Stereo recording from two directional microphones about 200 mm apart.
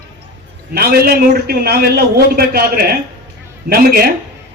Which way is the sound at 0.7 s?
50° right (ahead or behind).